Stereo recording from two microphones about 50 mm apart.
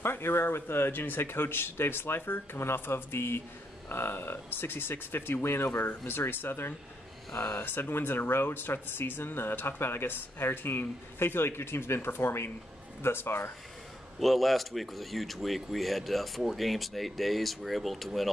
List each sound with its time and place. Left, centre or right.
0.0 s speech: left
14.2 s speech: centre